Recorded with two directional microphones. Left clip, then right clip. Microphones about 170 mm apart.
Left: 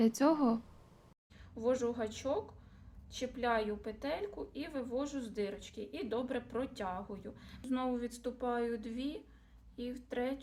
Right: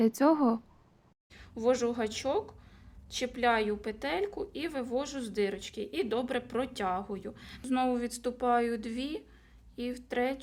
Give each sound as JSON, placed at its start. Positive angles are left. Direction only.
{"t": 0.0, "sound": "speech", "side_deg": -25}
{"t": 1.3, "sound": "a woman's voice", "side_deg": -55}